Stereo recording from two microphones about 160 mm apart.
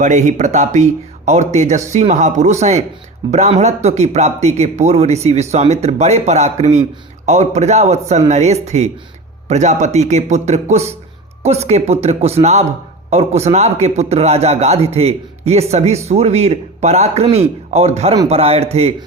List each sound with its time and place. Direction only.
0.0 s a man's voice: 50° right (ahead or behind)